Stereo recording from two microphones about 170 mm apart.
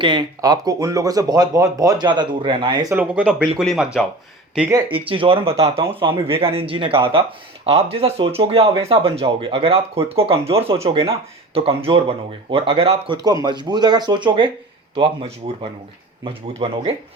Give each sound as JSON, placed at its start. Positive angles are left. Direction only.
{"t": 0.0, "sound": "speech", "side_deg": -25}
{"t": 2.9, "sound": "speech", "side_deg": -10}
{"t": 3.3, "sound": "speech", "side_deg": 5}
{"t": 4.7, "sound": "speech", "side_deg": -30}